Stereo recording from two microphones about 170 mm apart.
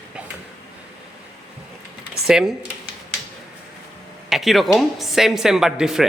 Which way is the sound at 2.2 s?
5° right (ahead or behind).